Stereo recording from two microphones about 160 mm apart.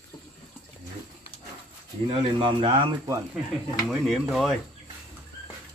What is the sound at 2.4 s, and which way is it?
Speech, 30° right (ahead or behind).